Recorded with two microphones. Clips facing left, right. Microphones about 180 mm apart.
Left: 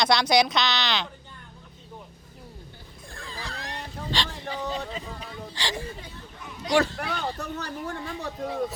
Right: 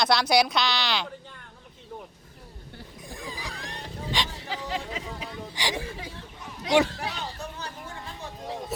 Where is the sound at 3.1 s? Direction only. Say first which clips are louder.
Right 1 dB; 15° right (ahead or behind).